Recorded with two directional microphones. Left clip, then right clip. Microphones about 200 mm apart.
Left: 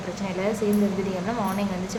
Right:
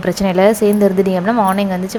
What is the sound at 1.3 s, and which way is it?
Speech, 40° right (ahead or behind).